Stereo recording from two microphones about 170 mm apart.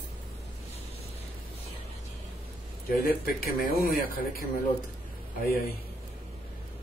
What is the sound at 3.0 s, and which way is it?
A man's voice, 60° left (ahead or behind).